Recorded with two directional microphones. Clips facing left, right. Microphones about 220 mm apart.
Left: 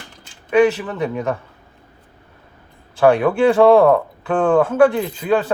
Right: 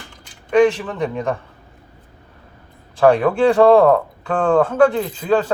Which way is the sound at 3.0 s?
5° left (ahead or behind).